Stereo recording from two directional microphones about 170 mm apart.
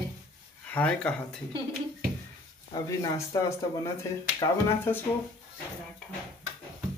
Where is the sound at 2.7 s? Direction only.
20° left (ahead or behind).